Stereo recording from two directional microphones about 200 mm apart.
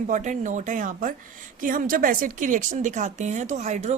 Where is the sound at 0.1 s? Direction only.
40° right (ahead or behind).